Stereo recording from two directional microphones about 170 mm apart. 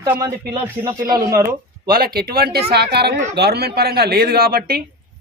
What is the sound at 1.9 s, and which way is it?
A man's voice, 60° right (ahead or behind).